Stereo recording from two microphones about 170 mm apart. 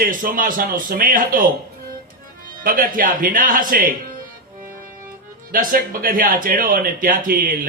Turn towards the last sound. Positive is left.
turn(degrees=-55)  # may be behind; listen again after turning